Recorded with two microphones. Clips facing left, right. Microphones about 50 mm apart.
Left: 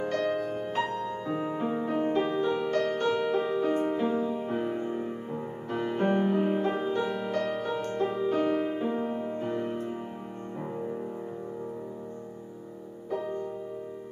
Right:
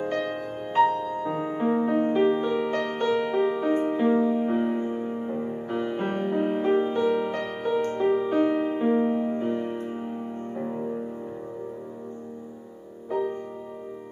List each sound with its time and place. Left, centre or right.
0.1 s music: centre
2.0 s music: centre
2.2 s music: centre
4.1 s music: right; by 11.0 s centre
13.1 s music: centre